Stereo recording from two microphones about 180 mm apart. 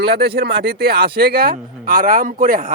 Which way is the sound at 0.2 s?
70° right (ahead or behind).